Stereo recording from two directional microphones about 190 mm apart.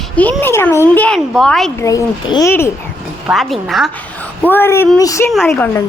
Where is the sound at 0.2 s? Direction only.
10° left (ahead or behind).